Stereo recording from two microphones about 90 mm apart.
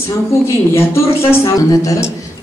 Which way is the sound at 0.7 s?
30° left (ahead or behind).